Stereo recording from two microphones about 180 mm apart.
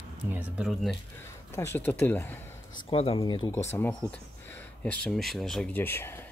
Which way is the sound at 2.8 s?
30° left (ahead or behind).